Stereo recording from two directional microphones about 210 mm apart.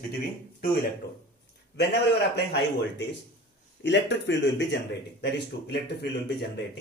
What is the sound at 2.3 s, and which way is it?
Speech, 50° left (ahead or behind).